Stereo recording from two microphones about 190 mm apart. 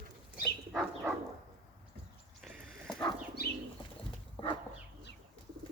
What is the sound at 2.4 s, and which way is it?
Horse, centre (ahead or behind).